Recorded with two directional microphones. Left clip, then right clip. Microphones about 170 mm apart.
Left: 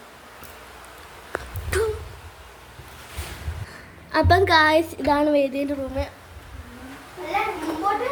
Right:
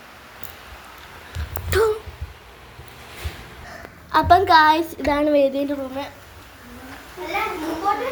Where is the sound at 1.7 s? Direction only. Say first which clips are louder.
Right 5 dB; centre (ahead or behind).